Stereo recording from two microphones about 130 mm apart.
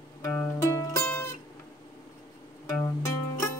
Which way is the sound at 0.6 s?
25° left (ahead or behind).